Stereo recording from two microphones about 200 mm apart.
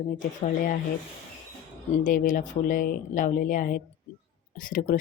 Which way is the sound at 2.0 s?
40° left (ahead or behind).